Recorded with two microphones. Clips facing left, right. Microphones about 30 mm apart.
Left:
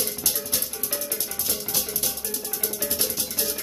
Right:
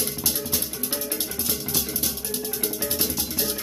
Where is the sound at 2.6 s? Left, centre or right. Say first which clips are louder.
Even; centre.